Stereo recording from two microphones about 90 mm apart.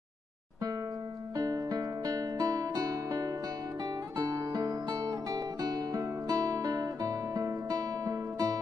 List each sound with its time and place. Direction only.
1.3 s music: 40° right (ahead or behind)